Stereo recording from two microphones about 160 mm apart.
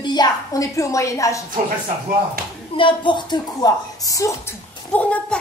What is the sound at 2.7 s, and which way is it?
A woman's voice, 30° left (ahead or behind).